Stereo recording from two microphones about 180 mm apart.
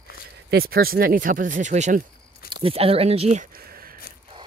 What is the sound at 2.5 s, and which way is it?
Speech, 30° right (ahead or behind).